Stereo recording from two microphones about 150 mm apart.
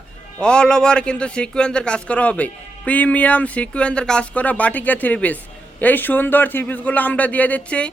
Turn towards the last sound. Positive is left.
turn(degrees=10)  # may be behind; listen again after turning